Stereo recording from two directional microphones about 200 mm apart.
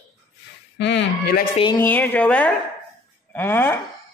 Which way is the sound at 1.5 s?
25° left (ahead or behind).